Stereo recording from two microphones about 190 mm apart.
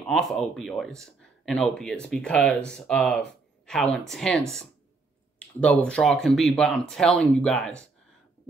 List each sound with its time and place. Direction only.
0.0 s speech: 5° left (ahead or behind)